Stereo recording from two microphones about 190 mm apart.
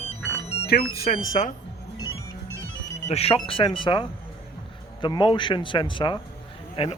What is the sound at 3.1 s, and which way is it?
Speech, 30° left (ahead or behind).